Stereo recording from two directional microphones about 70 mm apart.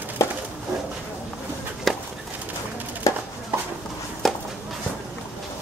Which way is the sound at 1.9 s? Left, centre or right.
Centre.